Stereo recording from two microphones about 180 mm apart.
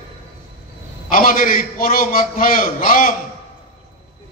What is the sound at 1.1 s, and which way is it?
A man's voice, 50° left (ahead or behind).